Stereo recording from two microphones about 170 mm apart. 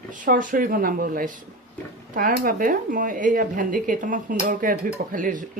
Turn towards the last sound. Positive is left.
turn(degrees=-50)  # may be behind; listen again after turning